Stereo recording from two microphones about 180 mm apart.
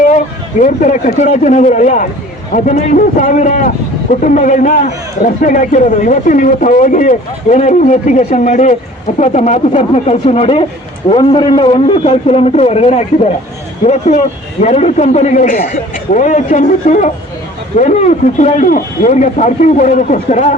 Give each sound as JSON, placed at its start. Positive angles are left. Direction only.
{"t": 0.6, "sound": "a man's voice", "side_deg": 45}